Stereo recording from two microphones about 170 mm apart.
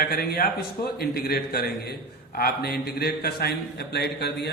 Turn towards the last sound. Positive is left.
turn(degrees=75)  # may be behind; listen again after turning